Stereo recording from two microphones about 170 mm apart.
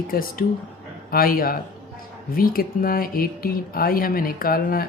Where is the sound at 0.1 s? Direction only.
60° left (ahead or behind).